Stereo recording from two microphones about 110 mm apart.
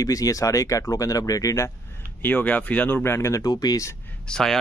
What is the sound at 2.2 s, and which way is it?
Speech, 15° left (ahead or behind).